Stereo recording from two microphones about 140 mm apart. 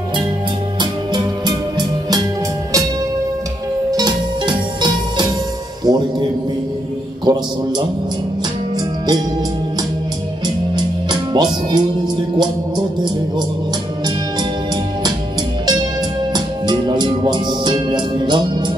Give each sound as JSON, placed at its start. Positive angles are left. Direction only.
{"t": 0.7, "sound": "music", "side_deg": -30}
{"t": 3.9, "sound": "music", "side_deg": -30}
{"t": 7.3, "sound": "a sound", "side_deg": -30}
{"t": 10.4, "sound": "music", "side_deg": -30}
{"t": 16.3, "sound": "music", "side_deg": -30}